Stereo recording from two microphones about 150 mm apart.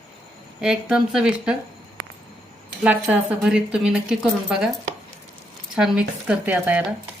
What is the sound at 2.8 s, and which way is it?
Speech, 5° right (ahead or behind).